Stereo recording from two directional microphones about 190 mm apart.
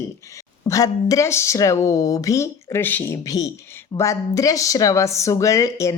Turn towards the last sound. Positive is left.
turn(degrees=15)  # may be behind; listen again after turning